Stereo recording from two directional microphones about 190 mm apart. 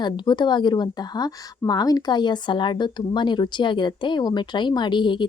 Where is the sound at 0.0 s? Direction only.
25° left (ahead or behind).